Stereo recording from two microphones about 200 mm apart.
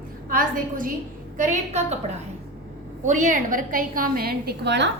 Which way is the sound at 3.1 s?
40° right (ahead or behind).